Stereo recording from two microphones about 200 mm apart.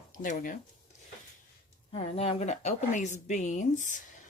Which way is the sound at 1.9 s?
30° left (ahead or behind).